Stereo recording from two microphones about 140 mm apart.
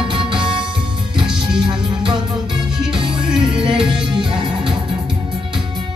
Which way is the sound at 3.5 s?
35° right (ahead or behind).